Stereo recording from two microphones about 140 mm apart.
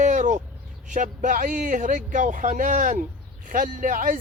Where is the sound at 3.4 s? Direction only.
75° right (ahead or behind).